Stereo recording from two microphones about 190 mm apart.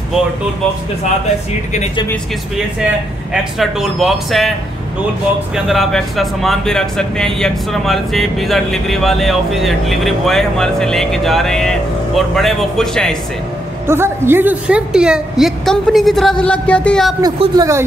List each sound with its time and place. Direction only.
3.5 s speech: centre (ahead or behind)
5.7 s speech: centre (ahead or behind)
13.8 s speech: 10° right (ahead or behind); by 17.1 s 5° left (ahead or behind)
17.2 s speech: 20° right (ahead or behind)